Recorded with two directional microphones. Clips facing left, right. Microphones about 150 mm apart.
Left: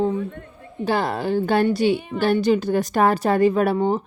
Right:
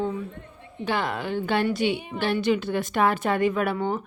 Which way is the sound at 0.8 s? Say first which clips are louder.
Left 5 dB; 35° left (ahead or behind).